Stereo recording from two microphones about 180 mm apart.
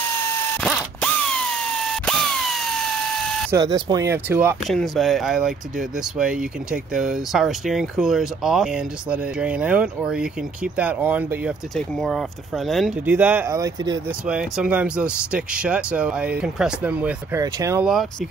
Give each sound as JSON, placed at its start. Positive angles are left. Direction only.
{"t": 0.6, "sound": "ratchet", "side_deg": 5}
{"t": 2.0, "sound": "a sound", "side_deg": 5}
{"t": 3.5, "sound": "speech", "side_deg": -20}
{"t": 4.6, "sound": "speech", "side_deg": 0}
{"t": 11.7, "sound": "speech", "side_deg": 0}
{"t": 13.1, "sound": "speech", "side_deg": -10}
{"t": 14.2, "sound": "speech", "side_deg": -5}